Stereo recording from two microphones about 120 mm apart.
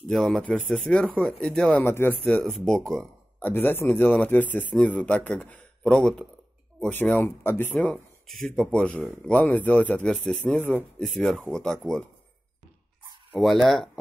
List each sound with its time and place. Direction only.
0.1 s speech: 5° left (ahead or behind)
1.9 s speech: 15° left (ahead or behind)
3.4 s speech: 15° left (ahead or behind)
13.3 s speech: centre (ahead or behind)